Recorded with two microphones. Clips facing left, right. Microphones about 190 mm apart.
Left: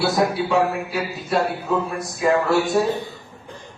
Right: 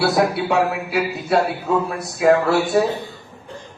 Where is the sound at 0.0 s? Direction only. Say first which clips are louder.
Right 2 dB; 65° right (ahead or behind).